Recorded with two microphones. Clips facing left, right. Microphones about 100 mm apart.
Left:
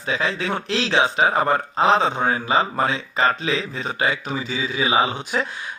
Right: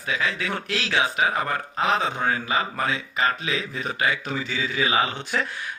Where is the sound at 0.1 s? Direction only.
30° left (ahead or behind).